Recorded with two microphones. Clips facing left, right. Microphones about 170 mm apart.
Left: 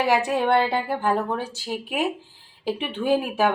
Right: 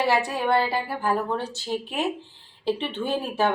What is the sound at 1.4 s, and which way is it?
Speech, 10° left (ahead or behind).